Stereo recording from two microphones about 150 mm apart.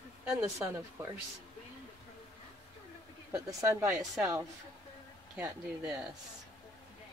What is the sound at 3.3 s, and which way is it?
Speech, 20° right (ahead or behind).